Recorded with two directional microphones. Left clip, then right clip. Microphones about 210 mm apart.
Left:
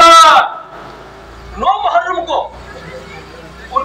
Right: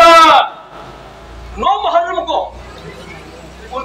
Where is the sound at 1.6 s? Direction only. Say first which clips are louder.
Even; 35° left (ahead or behind).